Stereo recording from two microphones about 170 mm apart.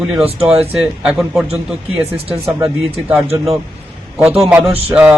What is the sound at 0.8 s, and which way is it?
Speech, 5° right (ahead or behind).